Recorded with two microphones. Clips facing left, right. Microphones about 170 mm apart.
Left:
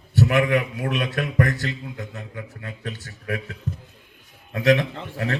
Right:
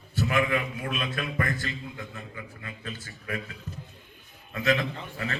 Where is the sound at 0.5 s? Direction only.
75° left (ahead or behind).